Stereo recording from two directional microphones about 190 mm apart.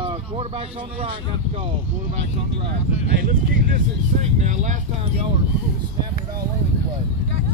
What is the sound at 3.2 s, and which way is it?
Speech, 50° right (ahead or behind).